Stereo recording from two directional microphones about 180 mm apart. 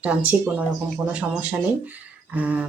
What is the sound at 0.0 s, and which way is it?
Speech, 5° right (ahead or behind).